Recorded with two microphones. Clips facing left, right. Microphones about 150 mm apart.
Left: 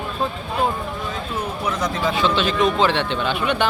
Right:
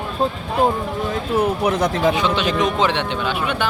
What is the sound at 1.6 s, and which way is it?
Speech, 55° right (ahead or behind).